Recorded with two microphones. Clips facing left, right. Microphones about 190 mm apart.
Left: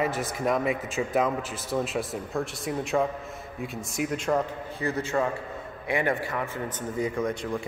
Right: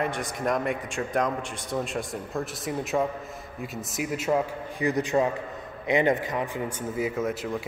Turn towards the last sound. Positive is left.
turn(degrees=-5)  # may be behind; listen again after turning